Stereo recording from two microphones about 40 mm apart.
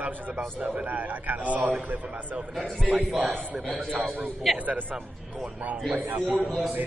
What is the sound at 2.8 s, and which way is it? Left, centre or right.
Speech, right.